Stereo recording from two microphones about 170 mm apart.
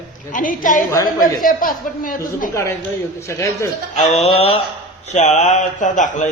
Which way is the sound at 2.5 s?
15° left (ahead or behind).